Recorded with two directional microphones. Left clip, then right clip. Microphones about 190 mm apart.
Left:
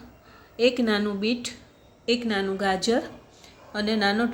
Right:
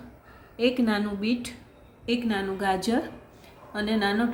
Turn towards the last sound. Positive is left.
turn(degrees=20)  # may be behind; listen again after turning